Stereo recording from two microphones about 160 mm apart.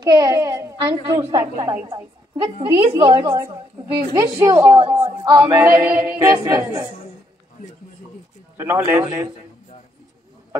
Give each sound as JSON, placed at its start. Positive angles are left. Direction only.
{"t": 0.0, "sound": "a woman's voice", "side_deg": -25}
{"t": 1.9, "sound": "a woman's voice", "side_deg": -30}
{"t": 2.9, "sound": "a woman's voice", "side_deg": -25}
{"t": 5.5, "sound": "a capella", "side_deg": -20}
{"t": 8.5, "sound": "a capella", "side_deg": -15}